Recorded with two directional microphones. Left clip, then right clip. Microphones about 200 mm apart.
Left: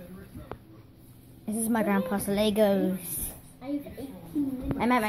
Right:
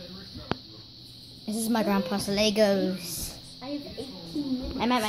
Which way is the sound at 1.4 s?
5° left (ahead or behind).